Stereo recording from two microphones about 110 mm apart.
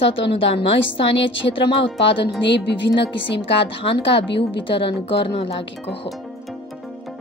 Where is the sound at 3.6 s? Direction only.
55° left (ahead or behind).